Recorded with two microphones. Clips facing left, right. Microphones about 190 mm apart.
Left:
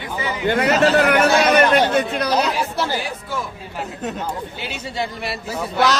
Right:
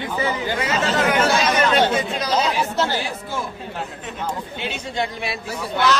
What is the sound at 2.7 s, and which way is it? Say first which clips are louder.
Speech: right 1 dB; 10° left (ahead or behind).